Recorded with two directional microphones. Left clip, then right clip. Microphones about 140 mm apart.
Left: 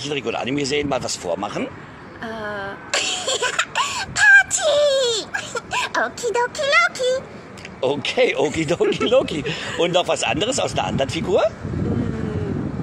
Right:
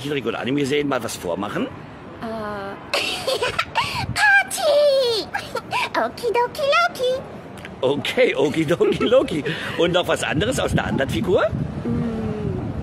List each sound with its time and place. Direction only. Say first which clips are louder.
0.0 s speech: even; 20° right (ahead or behind)
2.2 s a sound: left 1 dB; 10° right (ahead or behind)
7.8 s a man's voice: even; 20° right (ahead or behind)